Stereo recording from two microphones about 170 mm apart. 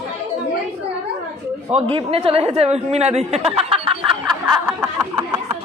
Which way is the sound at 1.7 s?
35° right (ahead or behind).